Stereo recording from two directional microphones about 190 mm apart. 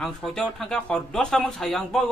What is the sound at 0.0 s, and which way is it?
A man's voice, 5° left (ahead or behind).